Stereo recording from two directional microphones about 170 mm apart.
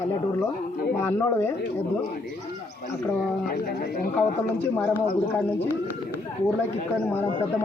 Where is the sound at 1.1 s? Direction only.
15° left (ahead or behind).